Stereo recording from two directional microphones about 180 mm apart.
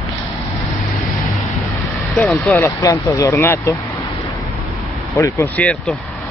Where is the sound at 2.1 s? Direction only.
5° left (ahead or behind).